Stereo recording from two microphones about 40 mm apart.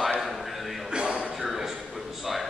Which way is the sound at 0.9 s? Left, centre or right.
Centre.